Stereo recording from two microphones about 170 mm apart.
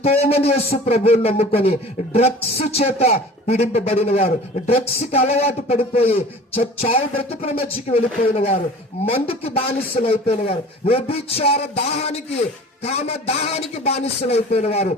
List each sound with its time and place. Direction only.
0.0 s speech: 35° left (ahead or behind)